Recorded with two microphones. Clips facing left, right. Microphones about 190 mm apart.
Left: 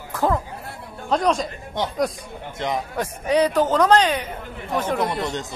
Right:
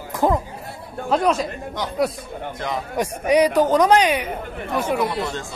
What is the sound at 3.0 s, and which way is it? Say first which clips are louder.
Speech: right 3 dB; 15° right (ahead or behind).